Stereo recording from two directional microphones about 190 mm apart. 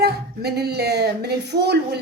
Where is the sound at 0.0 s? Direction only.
60° right (ahead or behind).